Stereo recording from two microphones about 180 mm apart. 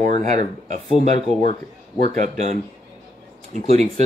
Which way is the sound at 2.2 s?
40° right (ahead or behind).